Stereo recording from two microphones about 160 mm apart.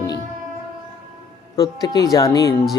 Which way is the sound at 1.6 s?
20° left (ahead or behind).